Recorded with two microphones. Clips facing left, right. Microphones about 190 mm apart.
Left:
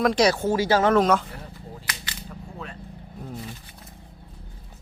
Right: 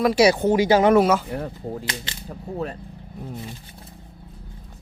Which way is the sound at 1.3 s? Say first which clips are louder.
Right 11 dB; 60° right (ahead or behind).